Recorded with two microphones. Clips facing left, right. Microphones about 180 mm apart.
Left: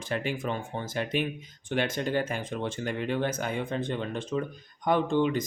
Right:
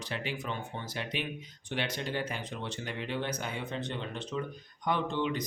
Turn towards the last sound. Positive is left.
turn(degrees=45)  # may be behind; listen again after turning